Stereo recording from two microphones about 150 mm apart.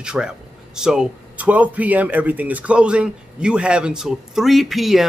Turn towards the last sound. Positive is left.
turn(degrees=0)  # may be behind; listen again after turning